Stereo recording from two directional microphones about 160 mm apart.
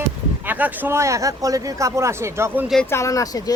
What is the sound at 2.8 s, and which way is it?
Speech, 15° left (ahead or behind).